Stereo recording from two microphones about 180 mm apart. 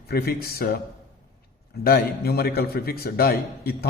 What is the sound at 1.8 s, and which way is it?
A man's voice, 60° left (ahead or behind).